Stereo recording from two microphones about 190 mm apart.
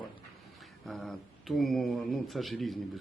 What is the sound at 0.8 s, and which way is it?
Speech, centre (ahead or behind).